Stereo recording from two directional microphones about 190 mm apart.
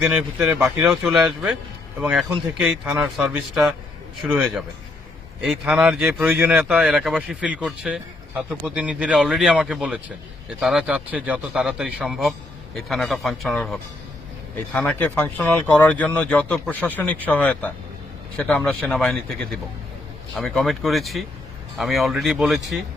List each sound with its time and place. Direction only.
0.0 s speech: 5° right (ahead or behind)